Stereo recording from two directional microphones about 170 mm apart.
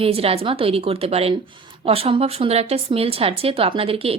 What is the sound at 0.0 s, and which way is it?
Speech, 35° right (ahead or behind).